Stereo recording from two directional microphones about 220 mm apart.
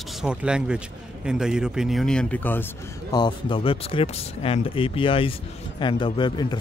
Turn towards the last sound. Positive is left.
turn(degrees=20)  # may be behind; listen again after turning